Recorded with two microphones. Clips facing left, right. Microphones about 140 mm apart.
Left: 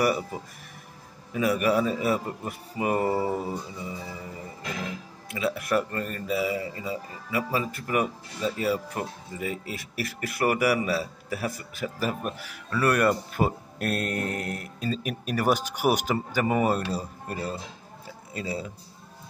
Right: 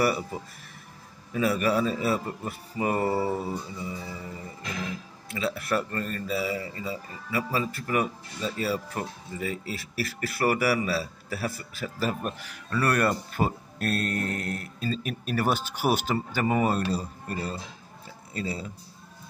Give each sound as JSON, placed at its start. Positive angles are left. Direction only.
{"t": 1.3, "sound": "speech", "side_deg": 15}
{"t": 5.3, "sound": "speech", "side_deg": 20}